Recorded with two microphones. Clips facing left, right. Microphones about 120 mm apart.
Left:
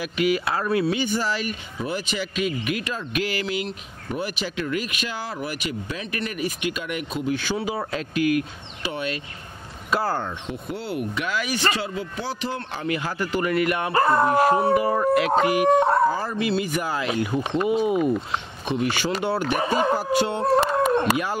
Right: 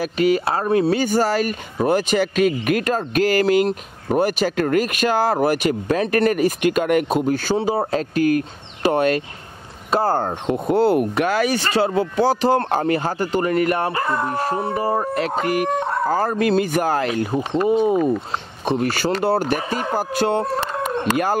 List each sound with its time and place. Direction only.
0.0 s speech: 35° right (ahead or behind)
7.5 s speech: 30° right (ahead or behind); by 9.2 s 50° right (ahead or behind)
9.8 s speech: 30° right (ahead or behind)
10.4 s speech: 50° right (ahead or behind)
11.9 s speech: 55° right (ahead or behind)
12.3 s speech: 40° right (ahead or behind)
13.9 s speech: 35° left (ahead or behind)
14.7 s speech: 35° right (ahead or behind)
15.4 s speech: 45° right (ahead or behind)
17.2 s speech: 35° right (ahead or behind)
18.7 s speech: 45° right (ahead or behind)